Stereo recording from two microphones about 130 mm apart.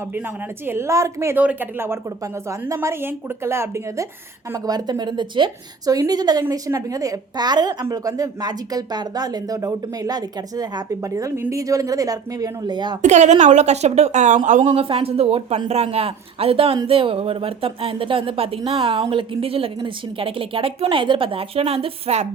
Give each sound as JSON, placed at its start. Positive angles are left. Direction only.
{"t": 0.6, "sound": "a woman's voice", "side_deg": -20}
{"t": 13.0, "sound": "a woman's voice", "side_deg": -65}
{"t": 14.7, "sound": "speech", "side_deg": -45}